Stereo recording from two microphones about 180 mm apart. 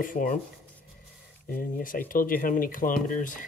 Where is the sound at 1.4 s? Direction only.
50° left (ahead or behind).